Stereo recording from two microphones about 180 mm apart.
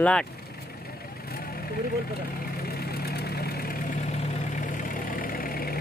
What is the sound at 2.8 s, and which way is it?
Vehicle, 60° left (ahead or behind).